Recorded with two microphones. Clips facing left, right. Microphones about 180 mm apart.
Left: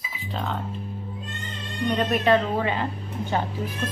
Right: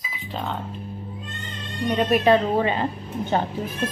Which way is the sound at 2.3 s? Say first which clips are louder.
Right 1 dB; 25° right (ahead or behind).